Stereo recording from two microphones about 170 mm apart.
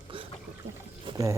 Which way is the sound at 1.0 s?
20° right (ahead or behind).